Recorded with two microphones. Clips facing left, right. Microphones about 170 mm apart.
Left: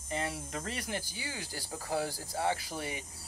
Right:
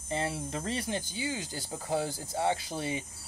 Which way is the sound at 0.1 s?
25° right (ahead or behind).